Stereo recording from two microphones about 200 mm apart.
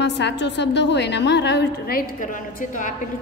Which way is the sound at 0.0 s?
60° left (ahead or behind).